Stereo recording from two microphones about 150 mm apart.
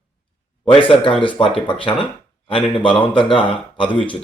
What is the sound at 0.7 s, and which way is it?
Speech, 35° left (ahead or behind).